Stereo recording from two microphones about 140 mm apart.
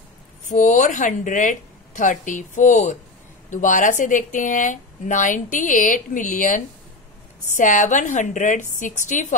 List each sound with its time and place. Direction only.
0.5 s a woman's voice: 60° left (ahead or behind)